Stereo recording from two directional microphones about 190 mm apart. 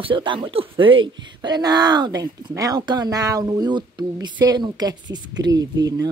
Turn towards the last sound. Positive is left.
turn(degrees=-20)  # may be behind; listen again after turning